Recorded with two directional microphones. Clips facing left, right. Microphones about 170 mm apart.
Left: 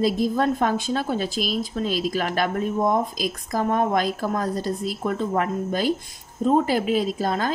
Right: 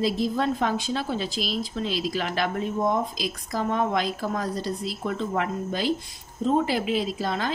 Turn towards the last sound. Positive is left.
turn(degrees=45)  # may be behind; listen again after turning